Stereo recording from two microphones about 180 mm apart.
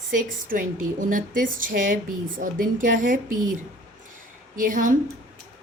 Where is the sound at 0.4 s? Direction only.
50° right (ahead or behind).